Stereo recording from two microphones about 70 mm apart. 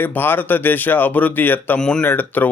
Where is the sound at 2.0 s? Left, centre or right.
Left.